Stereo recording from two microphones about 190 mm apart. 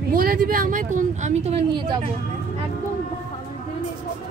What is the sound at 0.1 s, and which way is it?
Speech, 50° right (ahead or behind).